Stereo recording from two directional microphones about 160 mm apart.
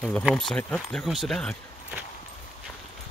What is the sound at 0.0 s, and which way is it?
Speech, centre (ahead or behind).